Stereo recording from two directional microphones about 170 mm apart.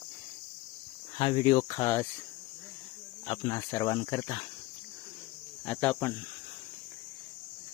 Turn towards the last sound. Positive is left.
turn(degrees=10)  # may be behind; listen again after turning